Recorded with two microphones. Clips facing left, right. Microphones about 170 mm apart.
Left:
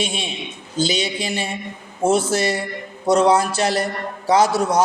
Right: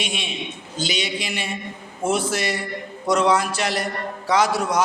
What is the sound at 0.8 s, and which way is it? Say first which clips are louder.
A man's voice: left 5 dB; 30° left (ahead or behind).